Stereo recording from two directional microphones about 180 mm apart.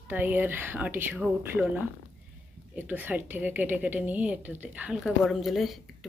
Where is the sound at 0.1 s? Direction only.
10° right (ahead or behind).